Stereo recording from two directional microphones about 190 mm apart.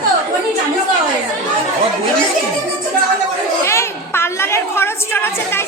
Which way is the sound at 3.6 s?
15° left (ahead or behind).